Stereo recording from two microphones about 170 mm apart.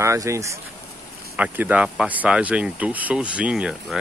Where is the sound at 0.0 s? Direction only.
15° right (ahead or behind).